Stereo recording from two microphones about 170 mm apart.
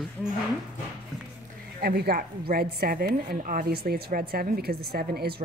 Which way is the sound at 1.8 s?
65° right (ahead or behind).